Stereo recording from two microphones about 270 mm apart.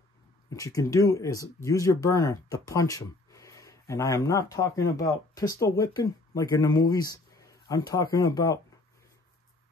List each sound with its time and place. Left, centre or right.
0.5 s speech: centre